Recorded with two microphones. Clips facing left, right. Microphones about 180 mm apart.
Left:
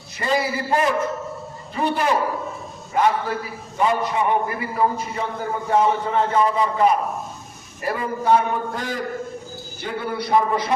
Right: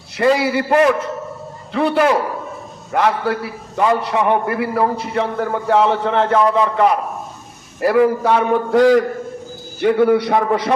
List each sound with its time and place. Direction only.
0.2 s a man's voice: 75° right (ahead or behind)